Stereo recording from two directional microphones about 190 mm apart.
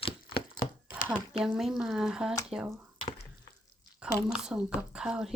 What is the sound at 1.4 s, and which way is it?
Speech, 5° right (ahead or behind).